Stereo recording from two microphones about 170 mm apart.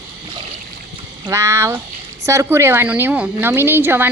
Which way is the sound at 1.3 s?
15° right (ahead or behind).